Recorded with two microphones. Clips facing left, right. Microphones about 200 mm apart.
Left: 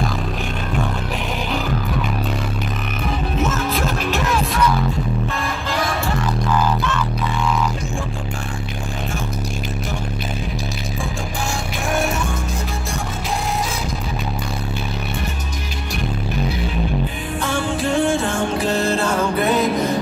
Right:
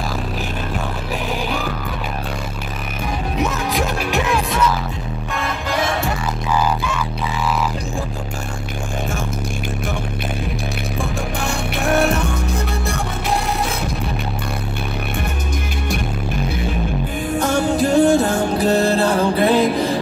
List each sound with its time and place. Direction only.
3.3 s music: 15° right (ahead or behind)
4.2 s music: centre (ahead or behind)
6.5 s music: 10° right (ahead or behind)
12.0 s music: 65° right (ahead or behind)
17.4 s music: 40° right (ahead or behind)